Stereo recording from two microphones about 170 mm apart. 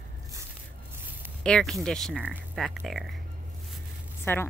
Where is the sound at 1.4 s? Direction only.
5° left (ahead or behind).